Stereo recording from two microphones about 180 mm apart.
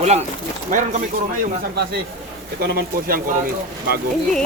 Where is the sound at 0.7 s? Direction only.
45° right (ahead or behind).